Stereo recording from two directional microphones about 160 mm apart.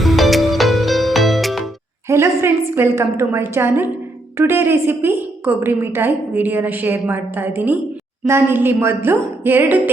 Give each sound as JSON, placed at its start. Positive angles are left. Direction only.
{"t": 0.0, "sound": "music", "side_deg": 0}
{"t": 2.0, "sound": "a woman's voice", "side_deg": -15}